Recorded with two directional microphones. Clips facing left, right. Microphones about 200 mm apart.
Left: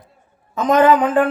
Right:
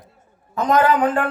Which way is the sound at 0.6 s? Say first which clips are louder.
Left 2 dB; 20° left (ahead or behind).